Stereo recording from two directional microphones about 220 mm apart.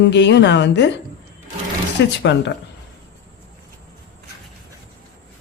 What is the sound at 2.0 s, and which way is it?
Speech, 55° left (ahead or behind).